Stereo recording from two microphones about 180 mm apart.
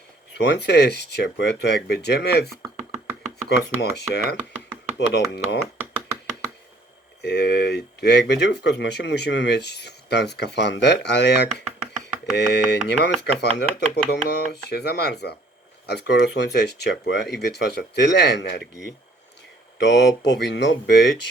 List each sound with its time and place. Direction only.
0.3 s speech: 65° left (ahead or behind)
7.2 s speech: 65° left (ahead or behind)